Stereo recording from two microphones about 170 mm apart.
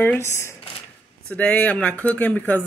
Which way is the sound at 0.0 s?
10° left (ahead or behind).